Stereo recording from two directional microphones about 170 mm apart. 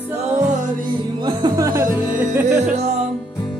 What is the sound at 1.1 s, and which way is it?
Music, 25° right (ahead or behind).